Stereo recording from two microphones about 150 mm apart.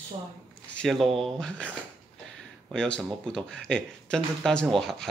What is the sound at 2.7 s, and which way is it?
Speech, 5° left (ahead or behind).